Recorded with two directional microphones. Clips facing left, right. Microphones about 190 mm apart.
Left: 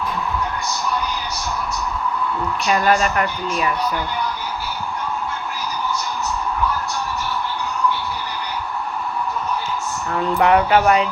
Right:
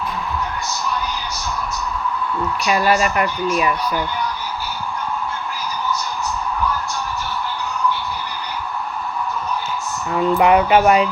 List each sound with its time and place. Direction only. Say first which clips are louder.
2.6 s speech: even; 10° right (ahead or behind)
10.1 s speech: right 2 dB; 15° right (ahead or behind)